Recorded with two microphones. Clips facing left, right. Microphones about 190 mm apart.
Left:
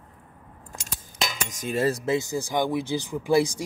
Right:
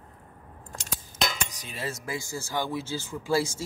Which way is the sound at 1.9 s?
25° left (ahead or behind).